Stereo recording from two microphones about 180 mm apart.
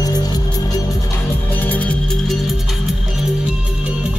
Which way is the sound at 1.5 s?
10° left (ahead or behind).